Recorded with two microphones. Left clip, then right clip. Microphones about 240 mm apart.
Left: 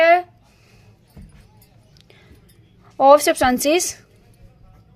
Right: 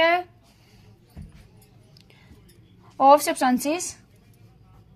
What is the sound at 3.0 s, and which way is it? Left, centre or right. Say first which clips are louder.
Speech: left 4 dB; left.